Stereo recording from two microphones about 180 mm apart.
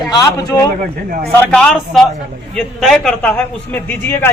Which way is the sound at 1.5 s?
5° left (ahead or behind).